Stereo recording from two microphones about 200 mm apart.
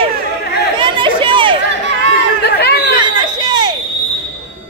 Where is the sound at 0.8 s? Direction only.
25° right (ahead or behind).